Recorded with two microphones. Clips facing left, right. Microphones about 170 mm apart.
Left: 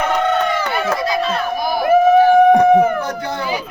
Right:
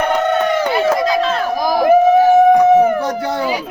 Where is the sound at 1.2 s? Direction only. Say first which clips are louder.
Right 3 dB; 90° right.